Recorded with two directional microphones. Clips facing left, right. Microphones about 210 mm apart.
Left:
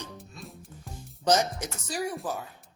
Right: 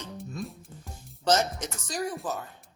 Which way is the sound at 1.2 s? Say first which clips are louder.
Even; 10° left (ahead or behind).